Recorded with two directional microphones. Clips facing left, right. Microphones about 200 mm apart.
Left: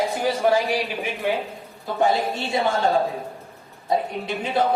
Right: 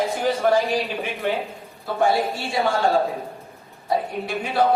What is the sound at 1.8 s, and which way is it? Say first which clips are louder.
Speech: right 1 dB; 20° left (ahead or behind).